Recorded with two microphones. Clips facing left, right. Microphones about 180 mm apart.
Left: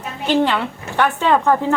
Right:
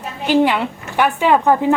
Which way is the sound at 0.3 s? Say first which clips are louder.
Right 2 dB; 15° right (ahead or behind).